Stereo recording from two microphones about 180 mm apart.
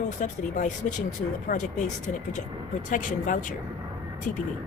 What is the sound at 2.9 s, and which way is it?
Speech, 45° left (ahead or behind).